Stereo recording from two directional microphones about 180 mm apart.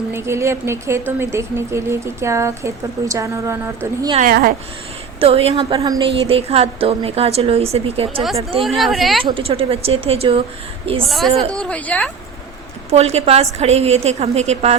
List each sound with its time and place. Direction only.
0.1 s a woman's voice: 15° right (ahead or behind)
4.2 s speech: 55° right (ahead or behind)
5.2 s a woman's voice: 35° right (ahead or behind)
5.5 s a woman's voice: 20° right (ahead or behind)
8.6 s speech: centre (ahead or behind)
9.3 s a woman's voice: 30° right (ahead or behind)
11.0 s a woman's voice: centre (ahead or behind)
12.9 s a woman's voice: 35° right (ahead or behind)